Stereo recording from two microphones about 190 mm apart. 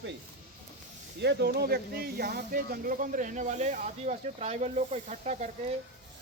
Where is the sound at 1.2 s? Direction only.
60° right (ahead or behind); by 5.5 s 40° right (ahead or behind).